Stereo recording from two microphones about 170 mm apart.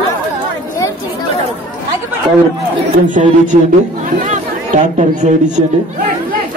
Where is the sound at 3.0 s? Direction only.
50° right (ahead or behind).